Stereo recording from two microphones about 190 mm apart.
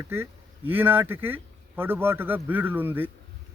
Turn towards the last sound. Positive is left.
turn(degrees=-10)  # may be behind; listen again after turning